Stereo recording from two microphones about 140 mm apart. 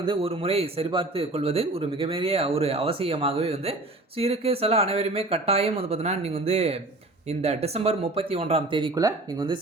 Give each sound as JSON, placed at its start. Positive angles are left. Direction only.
{"t": 0.0, "sound": "speech", "side_deg": -40}
{"t": 9.0, "sound": "speech", "side_deg": -30}